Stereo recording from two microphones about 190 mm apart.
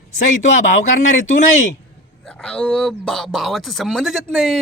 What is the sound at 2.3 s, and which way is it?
Speech, 5° left (ahead or behind).